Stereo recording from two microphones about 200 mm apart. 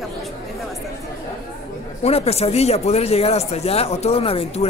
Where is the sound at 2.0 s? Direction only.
30° left (ahead or behind).